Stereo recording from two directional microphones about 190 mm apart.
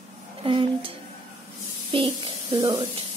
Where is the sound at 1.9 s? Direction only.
25° right (ahead or behind).